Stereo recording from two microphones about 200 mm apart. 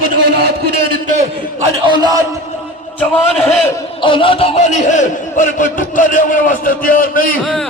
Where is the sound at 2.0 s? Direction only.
20° right (ahead or behind).